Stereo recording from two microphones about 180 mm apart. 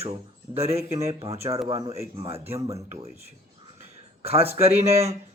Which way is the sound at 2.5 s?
15° right (ahead or behind).